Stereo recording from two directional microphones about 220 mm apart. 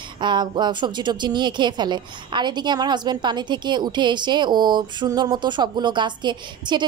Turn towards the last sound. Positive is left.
turn(degrees=-20)  # may be behind; listen again after turning